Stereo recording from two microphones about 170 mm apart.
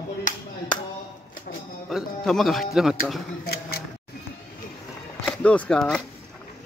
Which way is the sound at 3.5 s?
65° left (ahead or behind).